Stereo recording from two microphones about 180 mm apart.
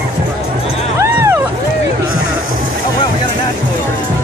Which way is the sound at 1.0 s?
15° right (ahead or behind).